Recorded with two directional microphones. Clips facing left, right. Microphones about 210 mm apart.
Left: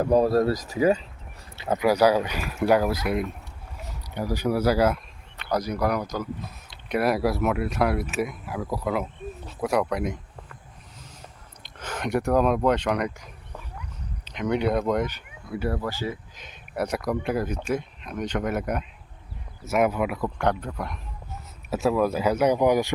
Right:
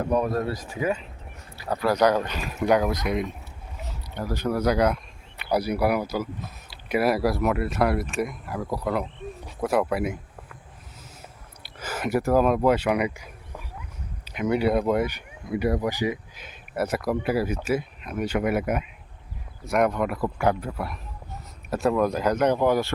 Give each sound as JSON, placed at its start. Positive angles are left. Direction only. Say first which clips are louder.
{"t": 0.0, "sound": "speech", "louder": "left 4 dB", "side_deg": 35}
{"t": 1.5, "sound": "speech", "louder": "left 3 dB", "side_deg": 20}
{"t": 1.9, "sound": "speech", "louder": "left 1 dB", "side_deg": 10}
{"t": 5.4, "sound": "speech", "louder": "right 2 dB", "side_deg": -10}
{"t": 11.6, "sound": "speech", "louder": "right 1 dB", "side_deg": -5}